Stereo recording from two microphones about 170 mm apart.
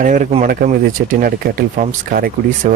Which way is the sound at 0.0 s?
50° right (ahead or behind).